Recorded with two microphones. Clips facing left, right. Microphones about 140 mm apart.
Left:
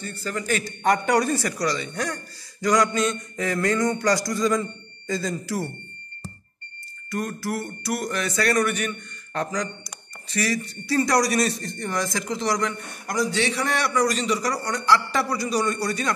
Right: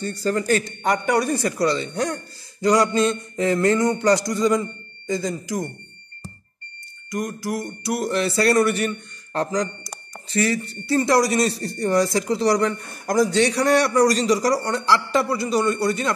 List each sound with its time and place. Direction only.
0.2 s a man's voice: 35° right (ahead or behind)
1.1 s mantra: 15° right (ahead or behind)
7.1 s a man's voice: 20° right (ahead or behind); by 13.1 s 35° right (ahead or behind)
13.1 s a man's voice: 45° right (ahead or behind); by 16.1 s 25° right (ahead or behind)